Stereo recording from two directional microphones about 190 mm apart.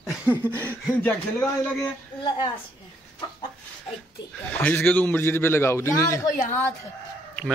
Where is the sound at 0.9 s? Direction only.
10° left (ahead or behind).